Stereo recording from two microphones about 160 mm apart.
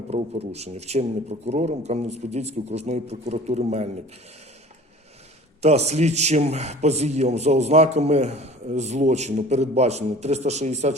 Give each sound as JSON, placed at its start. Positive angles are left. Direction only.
{"t": 0.1, "sound": "a man's voice", "side_deg": -40}
{"t": 5.6, "sound": "a man's voice", "side_deg": -40}